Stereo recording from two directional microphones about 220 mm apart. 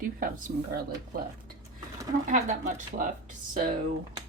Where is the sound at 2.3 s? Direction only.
35° right (ahead or behind).